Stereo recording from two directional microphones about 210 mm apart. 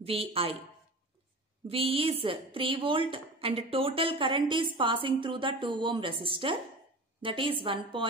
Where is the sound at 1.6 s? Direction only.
25° right (ahead or behind).